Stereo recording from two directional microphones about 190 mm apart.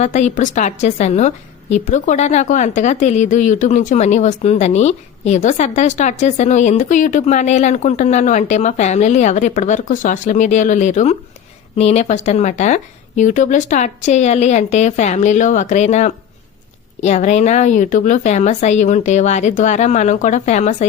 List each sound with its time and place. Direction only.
0.0 s a woman's voice: 40° left (ahead or behind)